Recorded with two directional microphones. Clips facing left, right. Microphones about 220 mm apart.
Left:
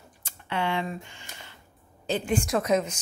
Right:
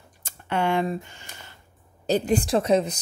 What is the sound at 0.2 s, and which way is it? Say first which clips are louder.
Speech: right 4 dB; 45° right (ahead or behind).